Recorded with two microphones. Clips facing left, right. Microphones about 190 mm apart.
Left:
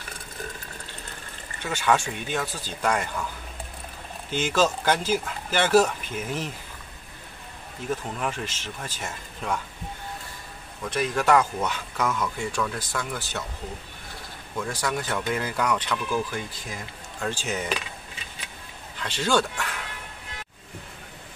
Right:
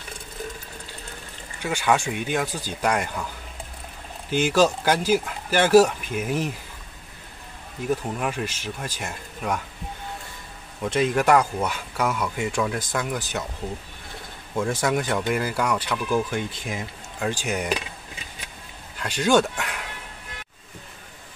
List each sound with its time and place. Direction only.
1.6 s speech: 10° right (ahead or behind)
4.3 s speech: 10° right (ahead or behind)
7.9 s speech: 10° right (ahead or behind)
10.9 s speech: 20° right (ahead or behind)
14.7 s speech: 20° right (ahead or behind)
16.3 s speech: 25° right (ahead or behind)
17.2 s speech: 15° right (ahead or behind)
18.9 s speech: 15° right (ahead or behind)